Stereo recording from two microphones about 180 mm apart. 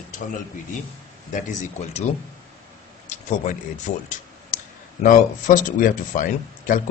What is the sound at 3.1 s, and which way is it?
Speech, 45° left (ahead or behind).